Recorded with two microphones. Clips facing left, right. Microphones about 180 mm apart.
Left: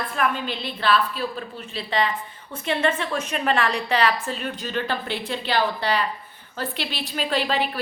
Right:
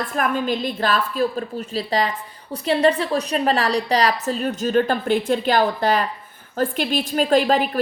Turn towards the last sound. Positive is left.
turn(degrees=-45)  # may be behind; listen again after turning